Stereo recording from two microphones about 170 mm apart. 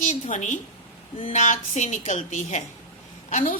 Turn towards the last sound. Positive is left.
turn(degrees=50)  # may be behind; listen again after turning